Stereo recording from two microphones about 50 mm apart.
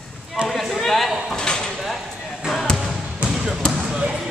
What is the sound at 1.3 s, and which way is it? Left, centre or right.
Speech, centre.